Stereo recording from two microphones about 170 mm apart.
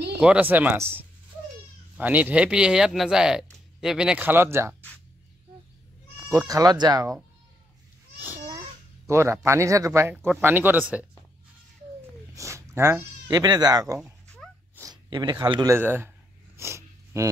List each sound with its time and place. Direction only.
0.2 s speech: 5° right (ahead or behind)
6.1 s speech: 20° right (ahead or behind)
8.5 s speech: 20° right (ahead or behind)
12.4 s speech: 15° right (ahead or behind)
14.8 s a sound: 25° right (ahead or behind)
15.7 s speech: 15° right (ahead or behind)
16.5 s a sound: 15° right (ahead or behind)